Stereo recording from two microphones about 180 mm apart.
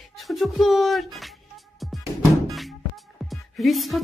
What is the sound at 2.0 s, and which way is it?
Music, 20° right (ahead or behind).